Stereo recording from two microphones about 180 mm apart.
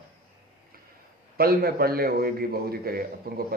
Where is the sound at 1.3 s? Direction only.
60° right (ahead or behind).